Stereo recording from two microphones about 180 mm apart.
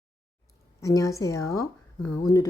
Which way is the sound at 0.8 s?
20° left (ahead or behind).